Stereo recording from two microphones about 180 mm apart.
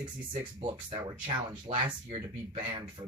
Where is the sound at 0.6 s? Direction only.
25° right (ahead or behind).